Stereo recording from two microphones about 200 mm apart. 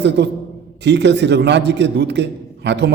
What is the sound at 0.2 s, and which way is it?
A man's voice, 60° right (ahead or behind).